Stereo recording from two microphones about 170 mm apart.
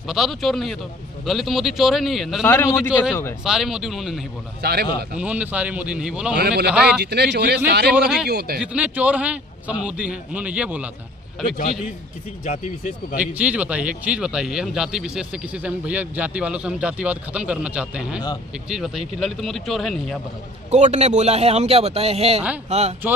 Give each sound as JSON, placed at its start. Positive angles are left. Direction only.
{"t": 0.0, "sound": "speech", "side_deg": 0}
{"t": 2.4, "sound": "a man's voice", "side_deg": 15}
{"t": 3.4, "sound": "speech", "side_deg": -5}
{"t": 4.6, "sound": "a man's voice", "side_deg": -70}
{"t": 5.2, "sound": "a man's voice", "side_deg": -10}
{"t": 6.3, "sound": "a man's voice", "side_deg": -70}
{"t": 6.7, "sound": "speech", "side_deg": -5}
{"t": 7.0, "sound": "a man's voice", "side_deg": -75}
{"t": 7.9, "sound": "speech", "side_deg": -5}
{"t": 8.3, "sound": "a man's voice", "side_deg": -70}
{"t": 8.5, "sound": "a man's voice", "side_deg": -5}
{"t": 12.4, "sound": "speech", "side_deg": 45}
{"t": 13.2, "sound": "a man's voice", "side_deg": -10}
{"t": 20.7, "sound": "a man's voice", "side_deg": -40}